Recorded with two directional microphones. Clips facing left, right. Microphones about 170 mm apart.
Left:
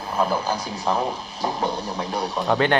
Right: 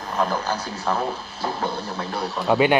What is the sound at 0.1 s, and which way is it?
Music, 10° left (ahead or behind).